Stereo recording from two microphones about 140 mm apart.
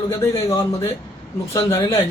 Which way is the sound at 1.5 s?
20° left (ahead or behind).